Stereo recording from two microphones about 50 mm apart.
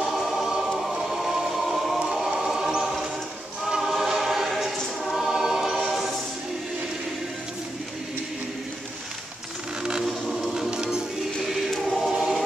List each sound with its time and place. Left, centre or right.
0.0 s choir: centre
10.7 s music: centre
12.0 s choir: centre